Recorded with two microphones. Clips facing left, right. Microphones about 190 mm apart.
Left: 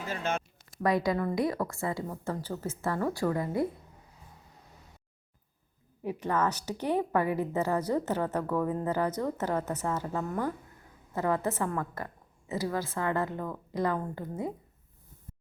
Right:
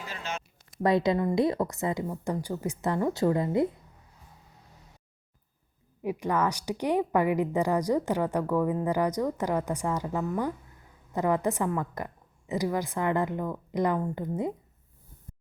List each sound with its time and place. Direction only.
0.0 s a sound: 50° left (ahead or behind)
0.8 s a woman's voice: 25° right (ahead or behind)
6.0 s a woman's voice: 10° right (ahead or behind)